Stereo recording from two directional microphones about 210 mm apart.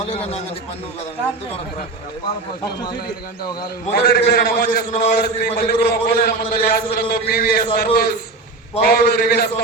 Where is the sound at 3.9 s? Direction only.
50° left (ahead or behind).